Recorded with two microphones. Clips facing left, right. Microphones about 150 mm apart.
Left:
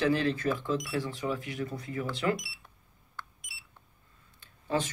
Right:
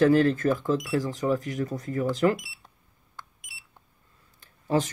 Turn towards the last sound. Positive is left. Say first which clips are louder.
# right 5 dB
turn(degrees=-40)  # may be behind; listen again after turning